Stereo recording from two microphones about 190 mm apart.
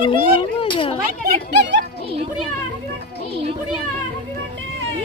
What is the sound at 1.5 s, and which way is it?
Speech, 65° right (ahead or behind).